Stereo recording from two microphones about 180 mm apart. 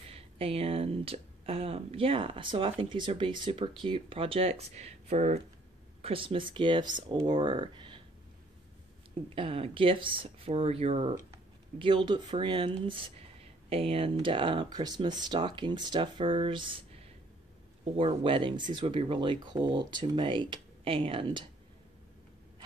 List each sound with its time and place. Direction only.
0.0 s speech: 35° right (ahead or behind)
9.3 s speech: 30° right (ahead or behind)
17.9 s speech: 30° right (ahead or behind)